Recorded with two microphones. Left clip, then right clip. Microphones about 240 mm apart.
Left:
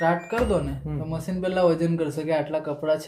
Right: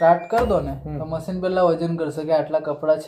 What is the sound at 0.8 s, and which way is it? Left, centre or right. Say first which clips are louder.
A man's voice: right 4 dB; left.